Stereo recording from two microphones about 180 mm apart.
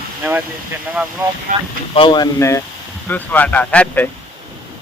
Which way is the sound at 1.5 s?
50° right (ahead or behind).